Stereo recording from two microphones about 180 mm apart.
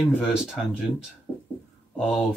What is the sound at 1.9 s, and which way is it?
Speech, 5° left (ahead or behind).